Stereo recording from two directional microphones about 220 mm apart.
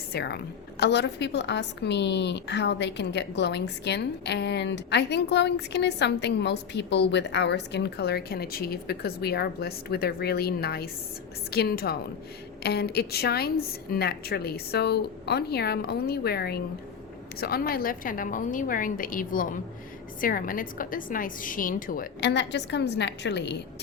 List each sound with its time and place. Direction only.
0.1 s a woman's voice: 45° left (ahead or behind)